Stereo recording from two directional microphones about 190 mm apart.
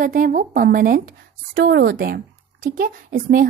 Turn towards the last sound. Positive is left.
turn(degrees=-50)  # may be behind; listen again after turning